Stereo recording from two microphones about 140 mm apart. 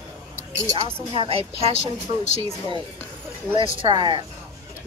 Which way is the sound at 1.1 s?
45° right (ahead or behind).